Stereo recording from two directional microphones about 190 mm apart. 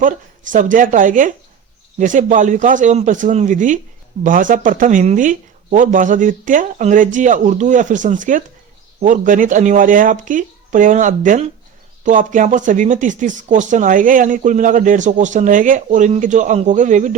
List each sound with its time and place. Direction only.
0.5 s speech: 45° right (ahead or behind)